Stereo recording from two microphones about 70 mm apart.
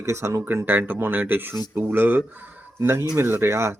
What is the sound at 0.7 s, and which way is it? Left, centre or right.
Speech, right.